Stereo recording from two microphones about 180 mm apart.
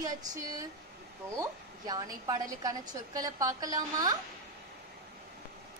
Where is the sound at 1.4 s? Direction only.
20° right (ahead or behind).